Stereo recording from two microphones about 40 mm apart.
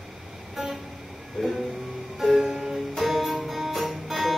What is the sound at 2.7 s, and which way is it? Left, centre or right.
Music, centre.